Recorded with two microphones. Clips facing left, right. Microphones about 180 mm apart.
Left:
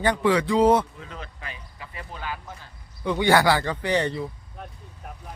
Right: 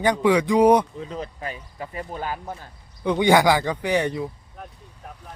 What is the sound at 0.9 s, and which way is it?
Speech, 30° right (ahead or behind).